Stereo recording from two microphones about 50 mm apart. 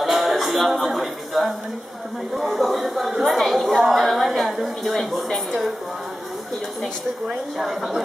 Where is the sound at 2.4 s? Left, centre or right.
Centre.